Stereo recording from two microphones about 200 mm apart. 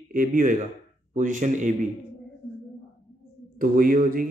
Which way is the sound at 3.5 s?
45° right (ahead or behind).